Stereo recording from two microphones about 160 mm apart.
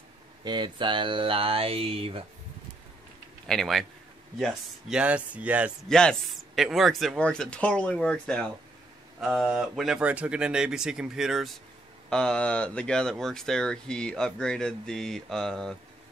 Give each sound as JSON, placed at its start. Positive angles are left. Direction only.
{"t": 0.4, "sound": "speech", "side_deg": -30}
{"t": 3.4, "sound": "speech", "side_deg": 0}
{"t": 5.9, "sound": "speech", "side_deg": 5}